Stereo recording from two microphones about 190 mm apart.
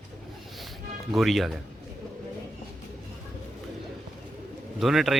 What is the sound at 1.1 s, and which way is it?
Speech, centre (ahead or behind).